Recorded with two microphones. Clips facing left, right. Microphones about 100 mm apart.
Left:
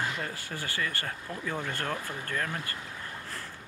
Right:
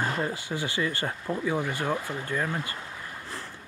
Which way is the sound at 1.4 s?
10° right (ahead or behind).